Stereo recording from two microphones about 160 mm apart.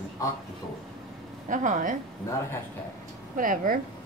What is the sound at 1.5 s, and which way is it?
Speech, 55° right (ahead or behind).